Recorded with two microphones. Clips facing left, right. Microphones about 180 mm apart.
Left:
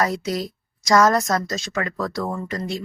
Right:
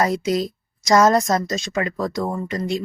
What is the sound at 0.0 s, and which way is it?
A woman's voice, 20° right (ahead or behind).